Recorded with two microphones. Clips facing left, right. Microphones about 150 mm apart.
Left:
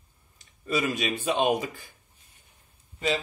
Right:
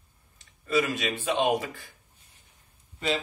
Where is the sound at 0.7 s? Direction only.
20° left (ahead or behind).